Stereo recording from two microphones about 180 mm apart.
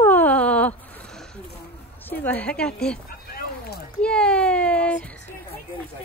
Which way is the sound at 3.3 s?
60° left (ahead or behind).